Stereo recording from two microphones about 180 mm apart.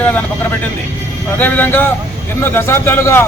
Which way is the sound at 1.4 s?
10° left (ahead or behind).